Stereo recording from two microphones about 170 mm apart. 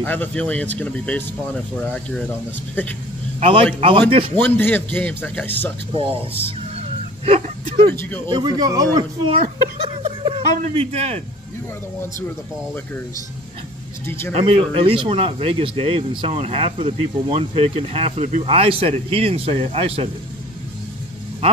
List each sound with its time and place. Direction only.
0.0 s a man's voice: 10° left (ahead or behind)
3.3 s a man's voice: 35° right (ahead or behind)
4.4 s a man's voice: 10° left (ahead or behind)
5.9 s speech: 35° right (ahead or behind)
7.2 s speech: 35° right (ahead or behind)
7.9 s a man's voice: 15° left (ahead or behind)
8.3 s speech: 25° right (ahead or behind)
9.4 s a sound: 40° right (ahead or behind)
14.0 s a man's voice: 15° left (ahead or behind)
14.3 s speech: 30° right (ahead or behind)